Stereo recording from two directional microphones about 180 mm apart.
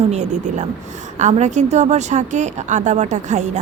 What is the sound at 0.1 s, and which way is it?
Speech, 40° right (ahead or behind).